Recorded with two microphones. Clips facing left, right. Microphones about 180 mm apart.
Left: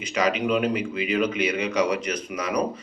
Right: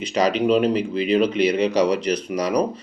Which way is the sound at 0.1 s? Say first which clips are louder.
Right 4 dB; 35° right (ahead or behind).